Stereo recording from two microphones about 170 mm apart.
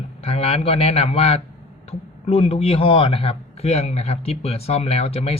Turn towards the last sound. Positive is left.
turn(degrees=35)  # may be behind; listen again after turning